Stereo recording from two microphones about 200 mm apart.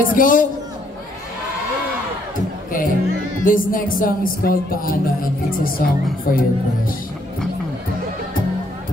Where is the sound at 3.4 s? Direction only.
45° left (ahead or behind).